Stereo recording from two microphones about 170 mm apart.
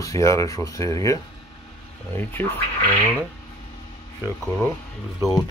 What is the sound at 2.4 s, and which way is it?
Speech, 15° left (ahead or behind).